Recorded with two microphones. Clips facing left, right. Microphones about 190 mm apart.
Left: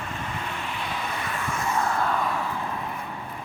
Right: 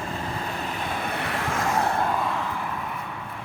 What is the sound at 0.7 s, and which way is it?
Vehicle, 50° right (ahead or behind).